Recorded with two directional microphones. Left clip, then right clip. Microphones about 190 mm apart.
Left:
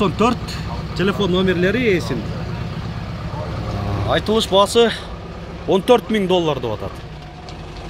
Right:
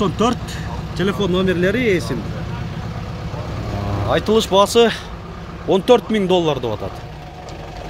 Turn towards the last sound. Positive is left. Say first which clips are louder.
# right 1 dB
turn(degrees=-10)  # may be behind; listen again after turning